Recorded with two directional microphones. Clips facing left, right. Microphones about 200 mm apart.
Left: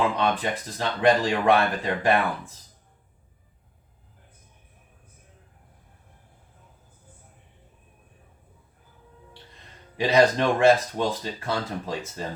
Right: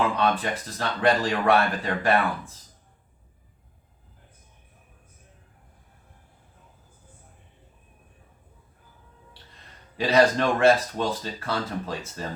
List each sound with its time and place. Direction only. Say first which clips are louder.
0.2 s speech: even; 15° left (ahead or behind)
10.0 s speech: left 1 dB; 15° left (ahead or behind)